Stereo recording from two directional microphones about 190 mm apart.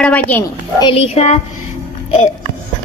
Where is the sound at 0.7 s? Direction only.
30° left (ahead or behind).